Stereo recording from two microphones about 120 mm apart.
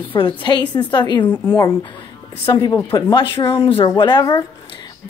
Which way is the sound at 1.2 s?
20° left (ahead or behind).